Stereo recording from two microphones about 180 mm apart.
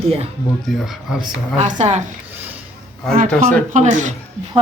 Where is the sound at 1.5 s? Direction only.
40° right (ahead or behind).